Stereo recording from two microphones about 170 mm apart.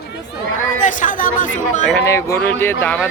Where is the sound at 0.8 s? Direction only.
50° left (ahead or behind).